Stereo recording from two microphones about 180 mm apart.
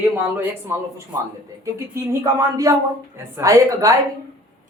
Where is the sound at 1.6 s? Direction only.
15° right (ahead or behind).